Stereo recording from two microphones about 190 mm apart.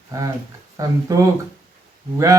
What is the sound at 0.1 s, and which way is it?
Speech, 20° right (ahead or behind).